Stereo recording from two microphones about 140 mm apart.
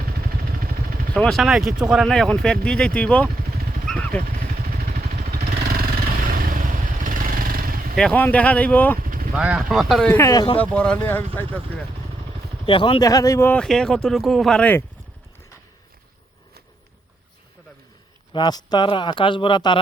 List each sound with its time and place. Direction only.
0.3 s vehicle: 90° right
1.1 s speech: 5° left (ahead or behind)
3.5 s vehicle: 90° right
3.8 s vehicle: 10° left (ahead or behind)
4.2 s vehicle: 85° right
7.9 s speech: 10° left (ahead or behind)
9.0 s vehicle: 90° right
9.3 s speech: 5° right (ahead or behind)
10.1 s speech: 20° left (ahead or behind)
10.6 s speech: 10° left (ahead or behind)
12.6 s speech: 40° left (ahead or behind)
13.0 s speech: 25° left (ahead or behind); by 14.8 s 5° left (ahead or behind)
18.3 s speech: 30° left (ahead or behind)